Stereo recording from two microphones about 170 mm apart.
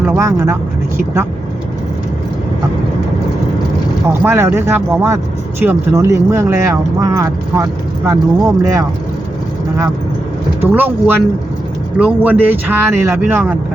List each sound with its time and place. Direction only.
0.0 s speech: 15° right (ahead or behind)
4.2 s speech: 15° right (ahead or behind)
10.6 s speech: 10° right (ahead or behind)